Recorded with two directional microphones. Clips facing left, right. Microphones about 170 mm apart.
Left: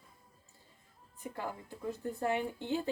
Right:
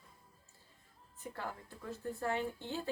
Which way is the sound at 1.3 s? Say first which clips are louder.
Left 4 dB; 15° left (ahead or behind).